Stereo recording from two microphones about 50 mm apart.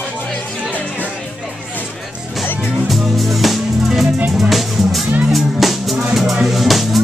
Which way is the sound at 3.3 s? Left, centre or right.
Centre.